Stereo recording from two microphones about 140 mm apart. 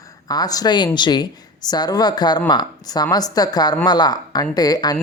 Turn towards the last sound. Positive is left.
turn(degrees=30)  # may be behind; listen again after turning